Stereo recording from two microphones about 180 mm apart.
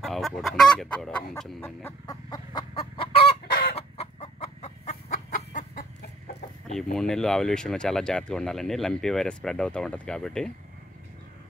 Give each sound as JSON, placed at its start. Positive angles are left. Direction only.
{"t": 0.0, "sound": "chicken", "side_deg": 0}
{"t": 6.8, "sound": "speech", "side_deg": 5}